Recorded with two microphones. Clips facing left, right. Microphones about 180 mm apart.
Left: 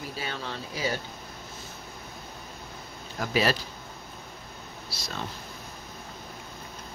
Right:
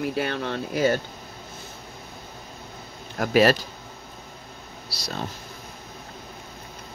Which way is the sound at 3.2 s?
50° right (ahead or behind).